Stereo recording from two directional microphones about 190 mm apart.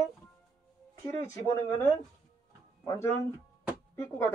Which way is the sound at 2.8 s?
15° left (ahead or behind).